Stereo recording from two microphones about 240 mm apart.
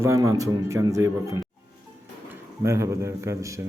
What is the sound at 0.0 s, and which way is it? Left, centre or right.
A man's voice, centre.